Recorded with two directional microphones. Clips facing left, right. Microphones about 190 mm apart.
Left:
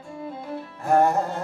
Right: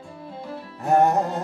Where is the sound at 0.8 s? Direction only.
20° right (ahead or behind).